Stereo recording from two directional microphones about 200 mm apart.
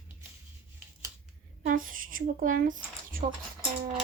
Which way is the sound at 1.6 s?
45° right (ahead or behind).